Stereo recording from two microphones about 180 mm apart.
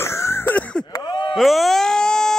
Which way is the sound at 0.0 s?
15° left (ahead or behind).